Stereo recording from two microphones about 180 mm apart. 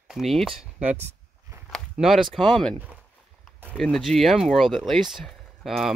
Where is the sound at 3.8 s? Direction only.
Centre (ahead or behind).